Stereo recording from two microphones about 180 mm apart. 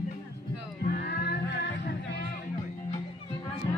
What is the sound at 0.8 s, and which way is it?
Music, 55° left (ahead or behind).